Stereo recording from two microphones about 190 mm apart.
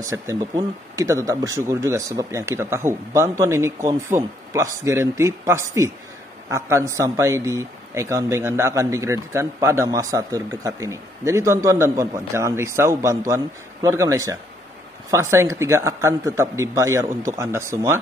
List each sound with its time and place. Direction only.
0.0 s speech: 15° right (ahead or behind)